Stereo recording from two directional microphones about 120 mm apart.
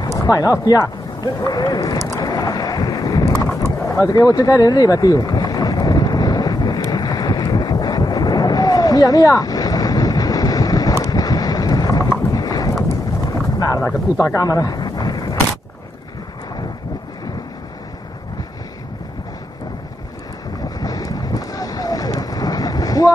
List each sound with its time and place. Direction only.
0.2 s speech: 30° left (ahead or behind)
2.1 s boat: 30° left (ahead or behind)
13.3 s wild animals: 30° left (ahead or behind)
13.8 s speech: 25° left (ahead or behind)
20.8 s boat: 30° left (ahead or behind)